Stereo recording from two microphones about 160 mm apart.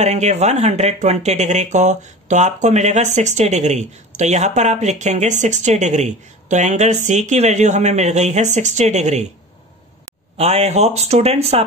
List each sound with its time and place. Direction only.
0.0 s speech: 45° right (ahead or behind)
10.3 s speech: 40° right (ahead or behind)